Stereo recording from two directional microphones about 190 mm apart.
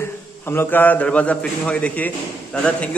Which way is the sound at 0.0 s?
10° left (ahead or behind).